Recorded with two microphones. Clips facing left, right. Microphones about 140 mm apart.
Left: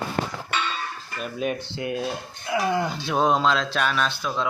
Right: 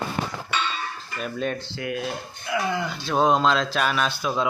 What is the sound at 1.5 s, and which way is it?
Speech, 20° left (ahead or behind).